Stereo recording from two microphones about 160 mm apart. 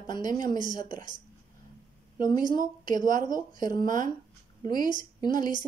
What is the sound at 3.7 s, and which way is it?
Speech, 55° right (ahead or behind).